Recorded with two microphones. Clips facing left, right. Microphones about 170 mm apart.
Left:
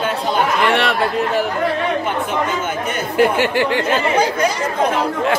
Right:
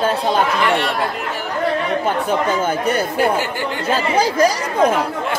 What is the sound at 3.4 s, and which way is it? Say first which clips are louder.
Speech: left 5 dB; 75° left (ahead or behind).